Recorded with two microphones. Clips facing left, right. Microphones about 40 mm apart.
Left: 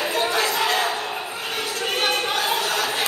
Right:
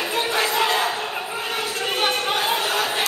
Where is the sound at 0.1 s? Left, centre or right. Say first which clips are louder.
Right 2 dB; centre.